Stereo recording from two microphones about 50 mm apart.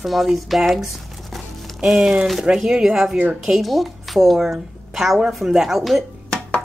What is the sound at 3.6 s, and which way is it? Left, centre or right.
A woman's voice, centre.